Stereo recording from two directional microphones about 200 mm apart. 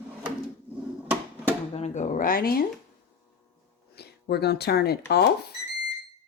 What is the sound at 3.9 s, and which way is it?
Speech, 55° left (ahead or behind).